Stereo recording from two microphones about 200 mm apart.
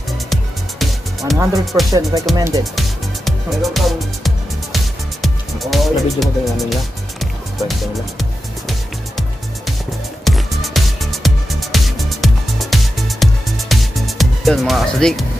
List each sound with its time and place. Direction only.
0.3 s music: centre (ahead or behind)
1.4 s speech: 15° right (ahead or behind)
3.3 s speech: centre (ahead or behind)
4.7 s music: centre (ahead or behind)
10.2 s music: centre (ahead or behind)